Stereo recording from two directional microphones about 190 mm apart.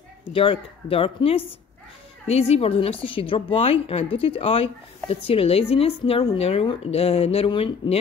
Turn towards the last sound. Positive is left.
turn(degrees=25)  # may be behind; listen again after turning